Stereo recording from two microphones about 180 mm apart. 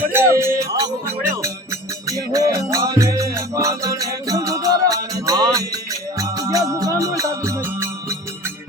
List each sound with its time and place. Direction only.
0.0 s music: 15° right (ahead or behind)